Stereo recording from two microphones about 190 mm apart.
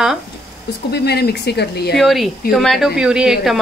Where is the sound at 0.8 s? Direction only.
60° left (ahead or behind).